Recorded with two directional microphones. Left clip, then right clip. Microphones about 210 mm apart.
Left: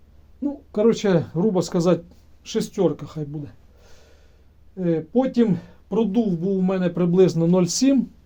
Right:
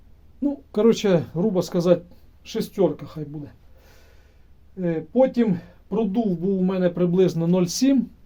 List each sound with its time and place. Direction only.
0.4 s speech: 10° right (ahead or behind); by 3.2 s 20° left (ahead or behind)
4.8 s speech: 20° left (ahead or behind)